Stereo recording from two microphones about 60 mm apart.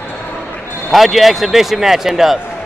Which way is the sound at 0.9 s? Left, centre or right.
Centre.